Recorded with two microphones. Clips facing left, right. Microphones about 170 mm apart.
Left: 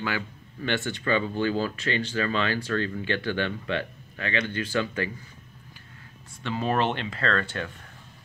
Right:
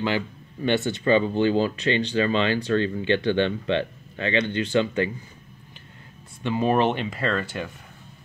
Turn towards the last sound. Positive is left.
turn(degrees=-10)  # may be behind; listen again after turning